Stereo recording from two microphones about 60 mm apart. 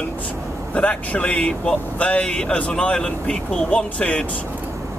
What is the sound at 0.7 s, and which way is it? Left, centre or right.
Speech, left.